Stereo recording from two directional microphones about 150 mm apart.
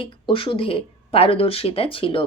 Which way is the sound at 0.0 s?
35° left (ahead or behind).